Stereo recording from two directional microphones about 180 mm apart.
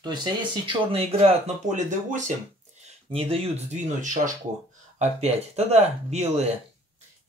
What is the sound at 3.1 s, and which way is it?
Speech, 30° right (ahead or behind).